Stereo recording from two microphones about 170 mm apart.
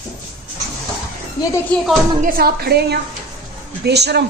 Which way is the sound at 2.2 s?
55° right (ahead or behind).